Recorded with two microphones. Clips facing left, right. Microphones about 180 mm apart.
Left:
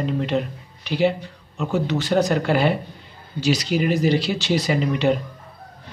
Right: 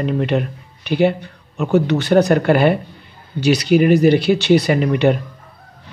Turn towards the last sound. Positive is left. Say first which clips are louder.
# right 5 dB
turn(degrees=-60)  # may be behind; listen again after turning